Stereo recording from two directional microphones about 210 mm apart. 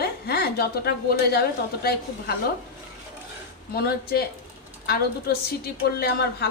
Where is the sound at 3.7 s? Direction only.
50° left (ahead or behind).